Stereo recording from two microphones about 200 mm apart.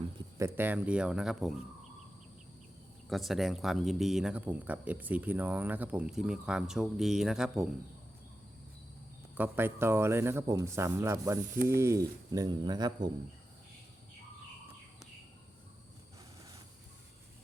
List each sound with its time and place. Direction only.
0.3 s speech: 10° right (ahead or behind)
3.1 s speech: centre (ahead or behind)
9.4 s speech: 10° right (ahead or behind)